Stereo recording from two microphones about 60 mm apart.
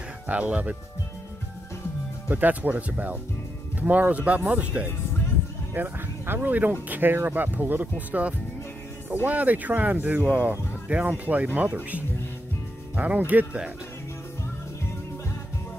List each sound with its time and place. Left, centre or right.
0.3 s speech: right
2.2 s speech: right